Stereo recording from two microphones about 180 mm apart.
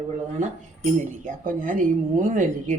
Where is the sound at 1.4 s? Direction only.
45° right (ahead or behind).